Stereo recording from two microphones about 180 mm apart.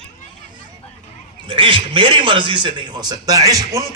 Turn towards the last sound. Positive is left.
turn(degrees=-20)  # may be behind; listen again after turning